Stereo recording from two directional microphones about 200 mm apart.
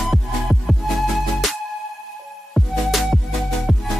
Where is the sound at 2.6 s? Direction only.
Centre (ahead or behind).